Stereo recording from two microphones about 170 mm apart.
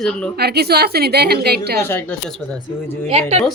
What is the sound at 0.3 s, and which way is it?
A woman's voice, 70° right (ahead or behind).